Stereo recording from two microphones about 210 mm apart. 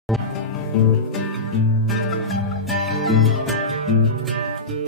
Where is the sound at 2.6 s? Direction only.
Centre (ahead or behind).